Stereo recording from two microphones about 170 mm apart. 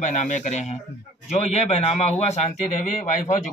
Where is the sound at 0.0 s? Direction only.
45° left (ahead or behind).